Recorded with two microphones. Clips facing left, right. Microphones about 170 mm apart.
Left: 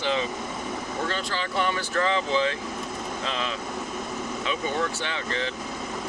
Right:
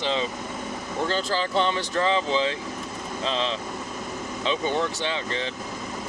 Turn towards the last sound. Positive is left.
turn(degrees=-20)  # may be behind; listen again after turning